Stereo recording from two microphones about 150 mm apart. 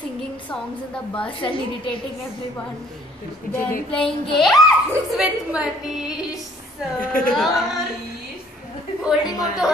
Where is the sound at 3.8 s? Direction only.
5° left (ahead or behind).